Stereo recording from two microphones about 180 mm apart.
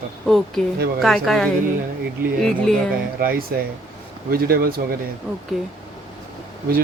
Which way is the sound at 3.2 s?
55° right (ahead or behind).